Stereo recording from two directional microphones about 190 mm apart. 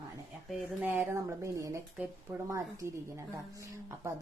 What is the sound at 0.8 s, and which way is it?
A woman's voice, 10° right (ahead or behind).